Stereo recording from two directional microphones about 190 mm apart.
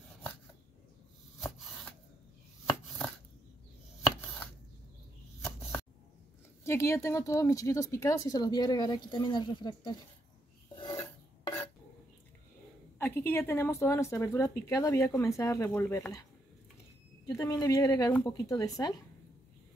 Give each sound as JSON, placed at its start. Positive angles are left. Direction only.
{"t": 2.6, "sound": "chopping", "side_deg": 15}
{"t": 5.4, "sound": "a sound", "side_deg": 15}
{"t": 6.6, "sound": "speech", "side_deg": 15}
{"t": 10.8, "sound": "filing", "side_deg": 20}
{"t": 13.0, "sound": "speech", "side_deg": 10}
{"t": 17.3, "sound": "speech", "side_deg": 20}